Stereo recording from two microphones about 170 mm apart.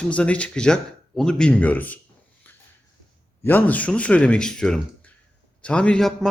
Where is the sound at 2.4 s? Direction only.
10° left (ahead or behind).